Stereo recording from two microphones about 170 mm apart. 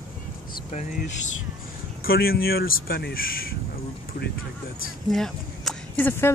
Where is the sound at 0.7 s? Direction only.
50° left (ahead or behind).